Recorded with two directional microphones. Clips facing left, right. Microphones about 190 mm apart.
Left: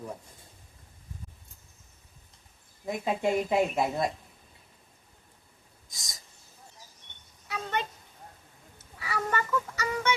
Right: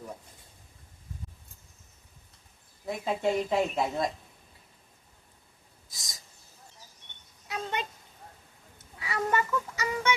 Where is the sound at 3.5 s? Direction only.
10° left (ahead or behind).